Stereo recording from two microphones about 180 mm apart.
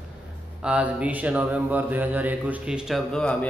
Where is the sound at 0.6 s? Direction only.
5° right (ahead or behind).